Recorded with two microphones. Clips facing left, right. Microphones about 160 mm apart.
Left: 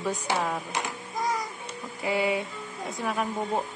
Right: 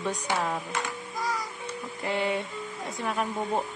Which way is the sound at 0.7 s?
20° left (ahead or behind).